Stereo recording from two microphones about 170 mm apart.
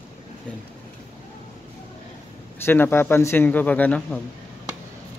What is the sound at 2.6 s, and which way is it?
A man's voice, 15° left (ahead or behind).